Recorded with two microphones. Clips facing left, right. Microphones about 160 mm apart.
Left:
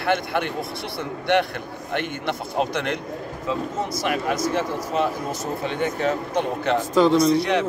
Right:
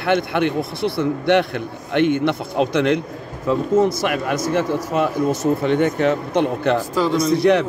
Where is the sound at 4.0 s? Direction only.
60° right (ahead or behind).